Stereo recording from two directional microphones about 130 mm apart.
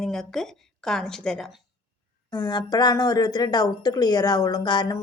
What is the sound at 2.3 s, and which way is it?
Speech, 30° left (ahead or behind).